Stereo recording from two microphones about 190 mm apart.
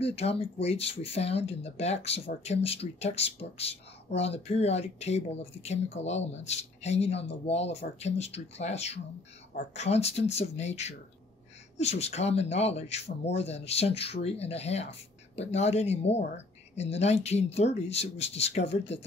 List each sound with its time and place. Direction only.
0.0 s speech: 30° left (ahead or behind)